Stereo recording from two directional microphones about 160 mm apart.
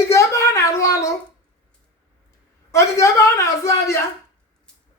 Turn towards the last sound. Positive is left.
turn(degrees=20)  # may be behind; listen again after turning